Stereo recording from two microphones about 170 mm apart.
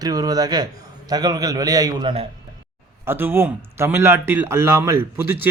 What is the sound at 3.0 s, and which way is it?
A man's voice, 10° right (ahead or behind).